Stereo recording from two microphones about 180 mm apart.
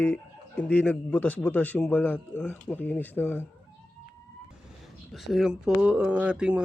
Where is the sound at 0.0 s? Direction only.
10° left (ahead or behind).